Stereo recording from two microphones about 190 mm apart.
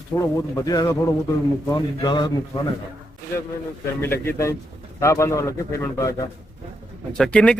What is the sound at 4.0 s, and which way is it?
A man's voice, 10° left (ahead or behind).